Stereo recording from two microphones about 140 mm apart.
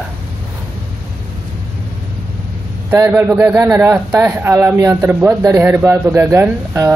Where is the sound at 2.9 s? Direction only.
15° right (ahead or behind).